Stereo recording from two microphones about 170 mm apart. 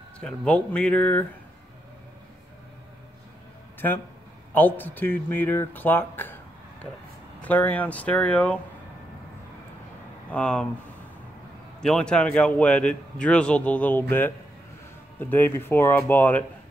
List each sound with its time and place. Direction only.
0.2 s speech: 5° left (ahead or behind)
4.6 s speech: 10° left (ahead or behind)
7.4 s speech: 10° left (ahead or behind)
10.3 s speech: 5° left (ahead or behind)
11.8 s speech: 5° left (ahead or behind)
15.1 s speech: 10° left (ahead or behind)